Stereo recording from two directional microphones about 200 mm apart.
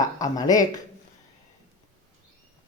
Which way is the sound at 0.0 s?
20° left (ahead or behind).